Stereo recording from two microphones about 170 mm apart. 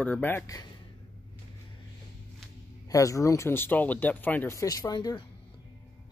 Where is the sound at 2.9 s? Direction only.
20° left (ahead or behind).